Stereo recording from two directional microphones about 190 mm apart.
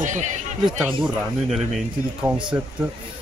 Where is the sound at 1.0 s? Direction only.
5° right (ahead or behind).